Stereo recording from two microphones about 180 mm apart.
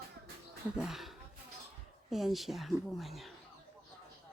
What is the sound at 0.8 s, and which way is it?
A woman's voice, centre (ahead or behind).